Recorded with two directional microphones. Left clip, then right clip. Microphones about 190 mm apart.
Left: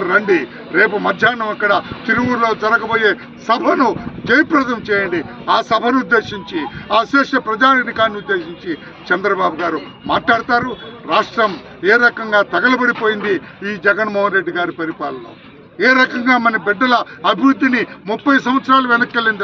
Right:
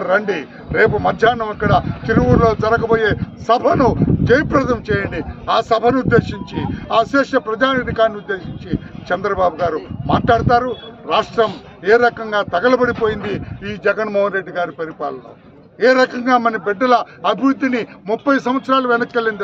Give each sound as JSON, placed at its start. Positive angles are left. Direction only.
{"t": 0.7, "sound": "a man's voice", "side_deg": -30}